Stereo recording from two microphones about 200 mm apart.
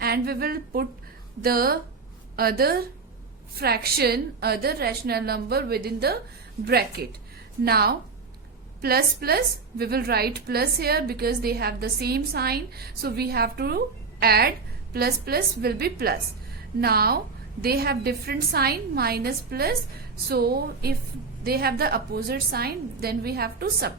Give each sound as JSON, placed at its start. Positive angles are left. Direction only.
{"t": 0.0, "sound": "a woman's voice", "side_deg": -50}